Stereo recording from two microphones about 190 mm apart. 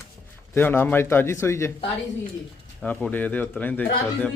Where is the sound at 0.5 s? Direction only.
10° left (ahead or behind).